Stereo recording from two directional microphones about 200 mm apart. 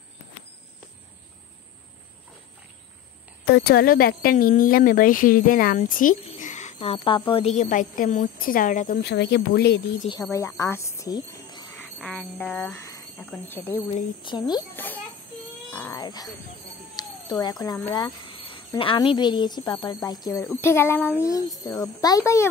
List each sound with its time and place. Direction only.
3.4 s a woman's voice: 50° left (ahead or behind)
9.1 s speech: 60° left (ahead or behind)
10.3 s speech: 15° left (ahead or behind)
11.8 s speech: 5° left (ahead or behind)
14.2 s speech: 20° left (ahead or behind)
15.7 s a sound: 10° left (ahead or behind)
16.0 s speech: 20° left (ahead or behind)
16.9 s cat: 20° left (ahead or behind)
17.9 s cricket: 25° left (ahead or behind)
18.8 s speech: 25° left (ahead or behind)